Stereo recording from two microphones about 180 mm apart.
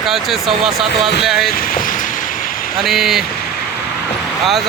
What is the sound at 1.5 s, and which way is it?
Vehicle, 50° left (ahead or behind).